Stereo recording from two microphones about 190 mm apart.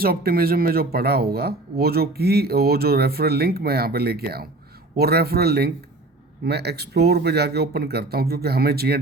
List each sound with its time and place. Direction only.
0.0 s speech: 50° right (ahead or behind)